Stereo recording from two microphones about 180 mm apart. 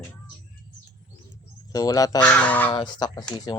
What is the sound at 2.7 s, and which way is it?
Speech, 25° left (ahead or behind).